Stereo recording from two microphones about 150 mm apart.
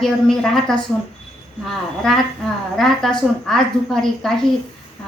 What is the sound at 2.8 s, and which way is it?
A woman's voice, centre (ahead or behind).